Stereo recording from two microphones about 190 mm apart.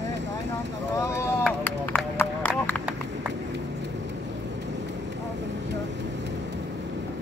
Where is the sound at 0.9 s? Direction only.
15° left (ahead or behind).